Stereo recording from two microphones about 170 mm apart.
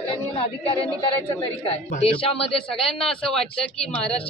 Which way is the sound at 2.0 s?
35° left (ahead or behind).